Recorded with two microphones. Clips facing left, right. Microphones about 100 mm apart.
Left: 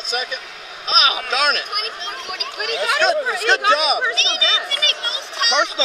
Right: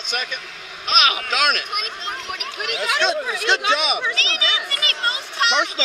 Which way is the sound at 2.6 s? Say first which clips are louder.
Left 3 dB; 45° left (ahead or behind).